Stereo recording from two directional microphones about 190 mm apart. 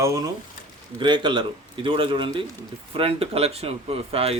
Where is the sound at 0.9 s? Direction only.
25° right (ahead or behind).